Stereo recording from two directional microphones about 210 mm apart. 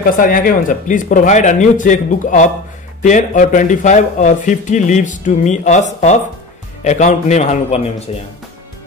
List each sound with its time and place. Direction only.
0.0 s speech: 45° left (ahead or behind)